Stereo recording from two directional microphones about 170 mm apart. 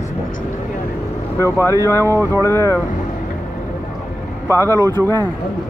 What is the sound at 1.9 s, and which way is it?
Speech, 20° right (ahead or behind).